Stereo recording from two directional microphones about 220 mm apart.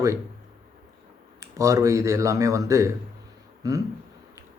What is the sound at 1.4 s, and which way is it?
Speech, 15° right (ahead or behind).